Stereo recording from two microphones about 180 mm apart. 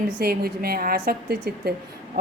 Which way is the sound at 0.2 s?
60° right (ahead or behind).